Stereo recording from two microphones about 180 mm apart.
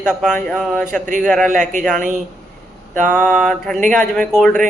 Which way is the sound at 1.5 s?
45° right (ahead or behind).